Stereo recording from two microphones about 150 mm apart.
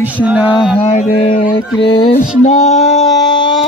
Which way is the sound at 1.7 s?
35° left (ahead or behind).